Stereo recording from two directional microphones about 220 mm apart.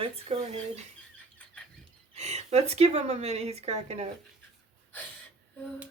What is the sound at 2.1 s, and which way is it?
A woman's voice, 30° right (ahead or behind).